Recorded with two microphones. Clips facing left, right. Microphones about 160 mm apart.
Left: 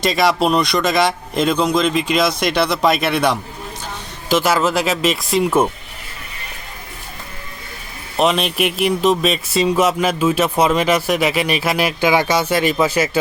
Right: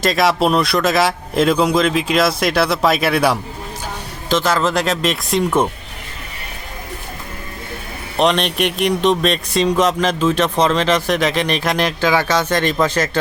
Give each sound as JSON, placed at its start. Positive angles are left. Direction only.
{"t": 0.0, "sound": "a man's voice", "side_deg": 0}
{"t": 4.3, "sound": "a man's voice", "side_deg": 10}
{"t": 8.1, "sound": "speech", "side_deg": 5}